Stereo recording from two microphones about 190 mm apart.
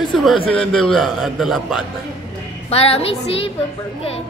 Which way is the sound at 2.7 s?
30° left (ahead or behind).